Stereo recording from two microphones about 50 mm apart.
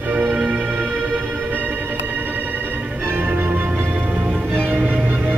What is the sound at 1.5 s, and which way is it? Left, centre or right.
Music, right.